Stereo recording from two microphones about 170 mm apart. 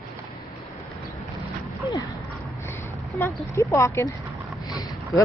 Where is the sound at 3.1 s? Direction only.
15° left (ahead or behind).